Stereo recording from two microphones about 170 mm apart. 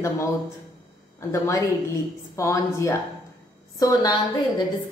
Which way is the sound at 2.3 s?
20° left (ahead or behind).